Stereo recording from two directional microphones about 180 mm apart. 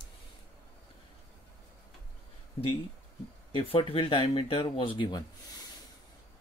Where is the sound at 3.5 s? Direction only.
30° left (ahead or behind).